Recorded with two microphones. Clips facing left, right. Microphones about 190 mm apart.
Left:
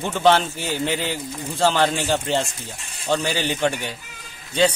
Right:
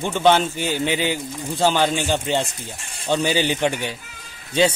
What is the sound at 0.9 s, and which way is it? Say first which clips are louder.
A man's voice: right 2 dB; 5° right (ahead or behind).